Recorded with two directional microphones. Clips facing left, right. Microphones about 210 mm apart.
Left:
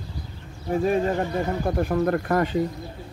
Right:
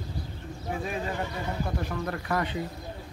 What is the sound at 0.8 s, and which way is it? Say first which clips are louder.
Speech: left 11 dB; 45° left (ahead or behind).